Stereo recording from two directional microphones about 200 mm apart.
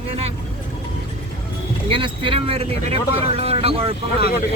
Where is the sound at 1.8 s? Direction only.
25° right (ahead or behind).